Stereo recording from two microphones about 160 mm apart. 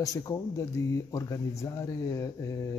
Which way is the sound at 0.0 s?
20° left (ahead or behind).